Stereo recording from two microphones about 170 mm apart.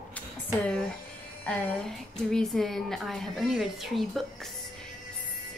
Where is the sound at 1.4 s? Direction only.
10° left (ahead or behind).